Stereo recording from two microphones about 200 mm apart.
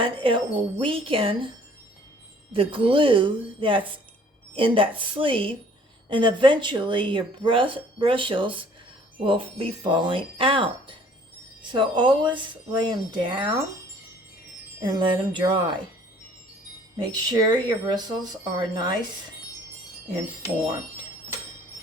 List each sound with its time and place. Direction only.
0.0 s speech: 25° right (ahead or behind)
2.5 s speech: 25° right (ahead or behind)
14.8 s speech: 25° right (ahead or behind)
17.0 s speech: 20° right (ahead or behind)